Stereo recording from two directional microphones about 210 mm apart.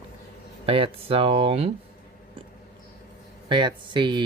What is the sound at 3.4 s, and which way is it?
Speech, 20° right (ahead or behind).